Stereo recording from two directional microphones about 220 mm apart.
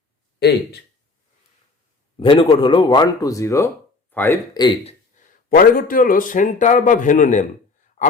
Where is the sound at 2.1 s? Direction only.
20° left (ahead or behind).